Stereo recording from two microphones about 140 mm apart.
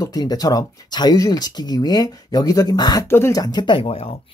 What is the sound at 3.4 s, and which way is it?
Speech, 30° left (ahead or behind).